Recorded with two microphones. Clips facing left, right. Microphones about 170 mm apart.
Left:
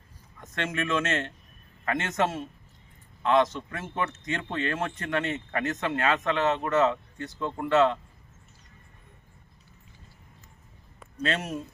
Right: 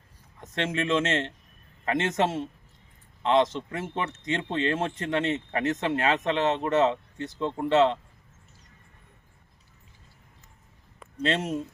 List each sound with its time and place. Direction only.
0.3 s speech: 25° right (ahead or behind)
11.2 s speech: 25° right (ahead or behind)